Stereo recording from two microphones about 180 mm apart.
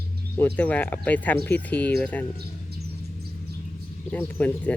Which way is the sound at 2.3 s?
60° right (ahead or behind).